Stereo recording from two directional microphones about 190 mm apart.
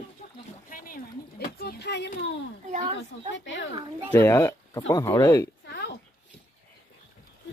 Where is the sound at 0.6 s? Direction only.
45° left (ahead or behind).